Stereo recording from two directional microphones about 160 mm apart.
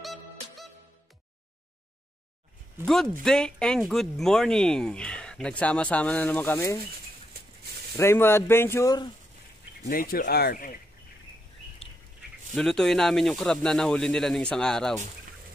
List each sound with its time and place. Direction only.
0.0 s music: centre (ahead or behind)
2.9 s speech: centre (ahead or behind)
8.0 s speech: 15° left (ahead or behind)
9.8 s speech: 60° left (ahead or behind)
12.5 s speech: 5° left (ahead or behind)